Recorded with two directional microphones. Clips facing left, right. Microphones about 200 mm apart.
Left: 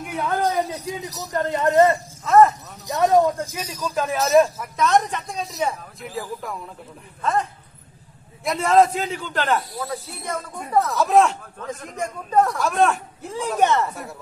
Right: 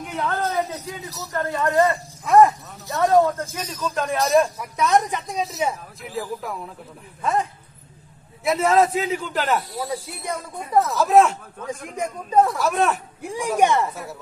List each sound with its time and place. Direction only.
0.0 s a man's voice: 10° left (ahead or behind)
2.2 s speech: 15° right (ahead or behind)
2.9 s a man's voice: 20° left (ahead or behind); by 7.4 s 10° right (ahead or behind)
8.5 s a man's voice: centre (ahead or behind)
10.8 s a man's voice: centre (ahead or behind)
11.6 s a man's voice: 10° right (ahead or behind)
13.2 s speech: 10° right (ahead or behind)